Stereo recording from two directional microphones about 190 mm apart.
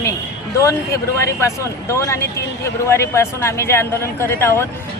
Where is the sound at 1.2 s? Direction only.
15° left (ahead or behind).